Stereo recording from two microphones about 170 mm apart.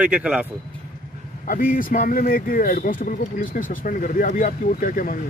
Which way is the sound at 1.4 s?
55° left (ahead or behind).